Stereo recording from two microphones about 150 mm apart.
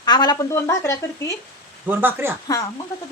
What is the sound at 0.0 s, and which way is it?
Speech, 30° left (ahead or behind).